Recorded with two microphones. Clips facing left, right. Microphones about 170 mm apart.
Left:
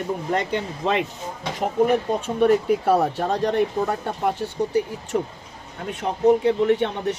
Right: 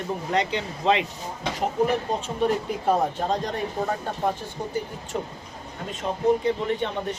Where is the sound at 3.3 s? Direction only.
65° left (ahead or behind).